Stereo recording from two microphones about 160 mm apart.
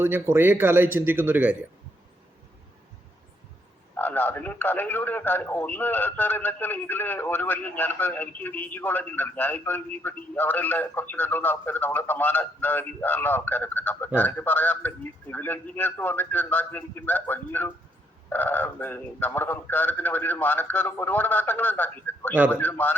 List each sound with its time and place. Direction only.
0.0 s speech: 15° right (ahead or behind)
3.9 s a man's voice: 10° left (ahead or behind)